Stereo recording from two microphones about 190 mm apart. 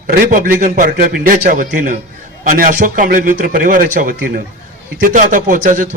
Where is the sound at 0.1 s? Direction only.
45° right (ahead or behind).